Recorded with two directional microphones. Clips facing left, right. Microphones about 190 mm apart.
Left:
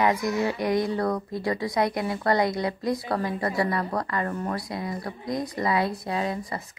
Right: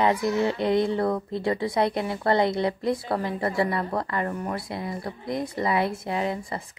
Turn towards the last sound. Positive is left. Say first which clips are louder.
# right 1 dB
turn(degrees=-25)  # may be behind; listen again after turning